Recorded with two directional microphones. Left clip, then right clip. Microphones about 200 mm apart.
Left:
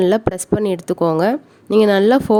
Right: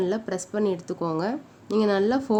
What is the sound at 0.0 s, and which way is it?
A woman's voice, 50° left (ahead or behind).